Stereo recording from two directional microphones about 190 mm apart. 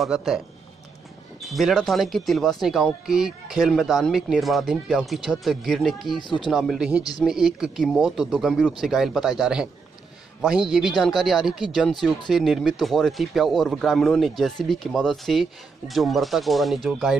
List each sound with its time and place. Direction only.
0.0 s speech: centre (ahead or behind)
1.4 s speech: centre (ahead or behind)
6.2 s speech: 25° left (ahead or behind)
6.5 s speech: centre (ahead or behind)